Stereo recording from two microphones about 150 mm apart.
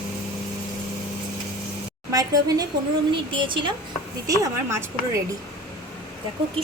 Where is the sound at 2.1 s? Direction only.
25° right (ahead or behind).